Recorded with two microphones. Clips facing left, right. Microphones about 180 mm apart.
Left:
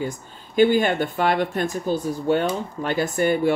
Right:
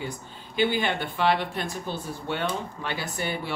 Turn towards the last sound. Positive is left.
turn(degrees=50)  # may be behind; listen again after turning